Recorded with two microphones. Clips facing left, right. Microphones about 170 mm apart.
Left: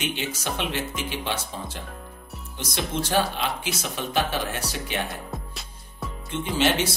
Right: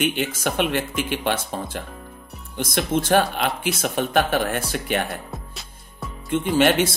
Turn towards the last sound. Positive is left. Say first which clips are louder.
# right 5 dB
turn(degrees=-50)  # may be behind; listen again after turning